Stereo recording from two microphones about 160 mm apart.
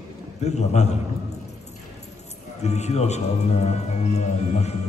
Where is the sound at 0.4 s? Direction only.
45° left (ahead or behind).